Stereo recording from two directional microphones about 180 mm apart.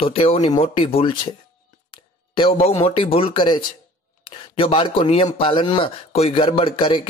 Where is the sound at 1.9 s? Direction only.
30° left (ahead or behind).